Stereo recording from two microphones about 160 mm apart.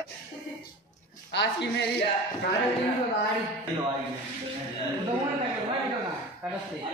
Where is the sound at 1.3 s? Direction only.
90° left.